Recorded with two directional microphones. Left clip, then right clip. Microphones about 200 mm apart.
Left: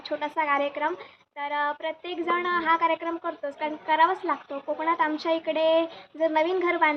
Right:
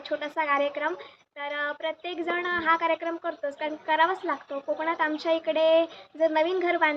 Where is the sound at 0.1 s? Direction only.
Centre (ahead or behind).